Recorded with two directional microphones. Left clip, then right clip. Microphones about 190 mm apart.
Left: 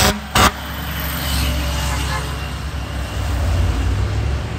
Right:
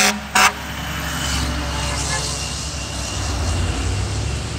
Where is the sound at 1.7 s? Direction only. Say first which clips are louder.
Even; 60° left (ahead or behind).